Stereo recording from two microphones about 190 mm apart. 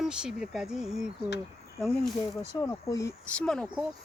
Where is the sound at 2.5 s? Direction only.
15° left (ahead or behind).